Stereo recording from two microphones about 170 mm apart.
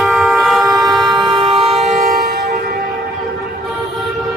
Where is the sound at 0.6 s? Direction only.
20° right (ahead or behind).